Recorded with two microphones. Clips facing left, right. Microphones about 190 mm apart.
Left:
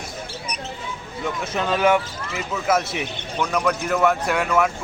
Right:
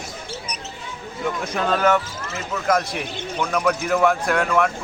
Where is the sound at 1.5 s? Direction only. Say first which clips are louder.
Left 1 dB; 5° left (ahead or behind).